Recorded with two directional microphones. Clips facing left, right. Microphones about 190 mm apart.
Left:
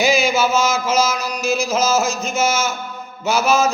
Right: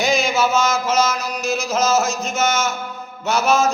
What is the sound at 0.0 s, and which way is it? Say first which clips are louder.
Mantra: left 2 dB; centre (ahead or behind).